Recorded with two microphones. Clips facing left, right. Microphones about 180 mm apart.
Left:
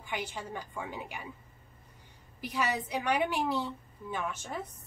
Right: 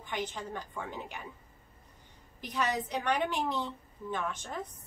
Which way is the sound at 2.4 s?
10° left (ahead or behind).